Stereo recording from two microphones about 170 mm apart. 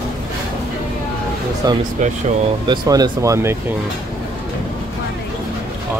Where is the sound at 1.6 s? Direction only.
25° right (ahead or behind).